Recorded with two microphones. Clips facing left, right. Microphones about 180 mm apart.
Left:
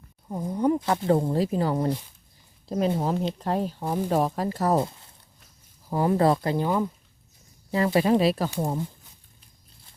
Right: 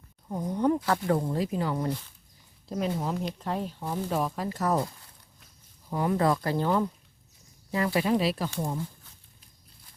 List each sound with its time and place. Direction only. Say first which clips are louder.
0.3 s speech: left 2 dB; 5° left (ahead or behind); by 6.7 s 20° left (ahead or behind)
6.7 s speech: right 1 dB; 10° left (ahead or behind)
7.7 s speech: left 4 dB; 30° left (ahead or behind)
8.0 s speech: left 5 dB; 45° left (ahead or behind)